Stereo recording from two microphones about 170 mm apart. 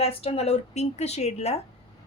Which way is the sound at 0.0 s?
35° left (ahead or behind).